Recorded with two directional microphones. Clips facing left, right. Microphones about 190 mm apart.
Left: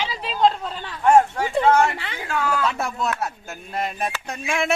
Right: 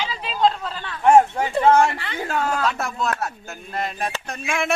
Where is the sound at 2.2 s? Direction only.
40° right (ahead or behind).